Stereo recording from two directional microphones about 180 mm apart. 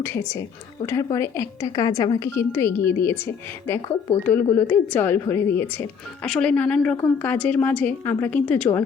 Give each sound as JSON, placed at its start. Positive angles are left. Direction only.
{"t": 0.0, "sound": "a woman's voice", "side_deg": 10}
{"t": 3.8, "sound": "speech", "side_deg": 25}
{"t": 4.3, "sound": "a woman's voice", "side_deg": 10}